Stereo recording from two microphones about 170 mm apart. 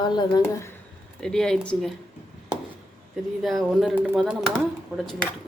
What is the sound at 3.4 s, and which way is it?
Speech, centre (ahead or behind).